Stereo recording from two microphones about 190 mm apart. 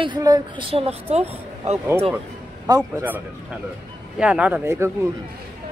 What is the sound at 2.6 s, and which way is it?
Speech, 10° right (ahead or behind).